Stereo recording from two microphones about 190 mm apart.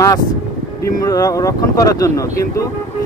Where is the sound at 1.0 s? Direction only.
15° left (ahead or behind).